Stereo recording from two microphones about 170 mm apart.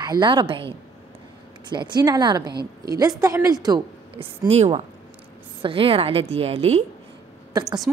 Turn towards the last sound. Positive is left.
turn(degrees=-20)  # may be behind; listen again after turning